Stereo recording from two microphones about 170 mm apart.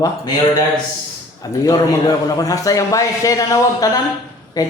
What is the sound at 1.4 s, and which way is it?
A man's voice, 20° left (ahead or behind).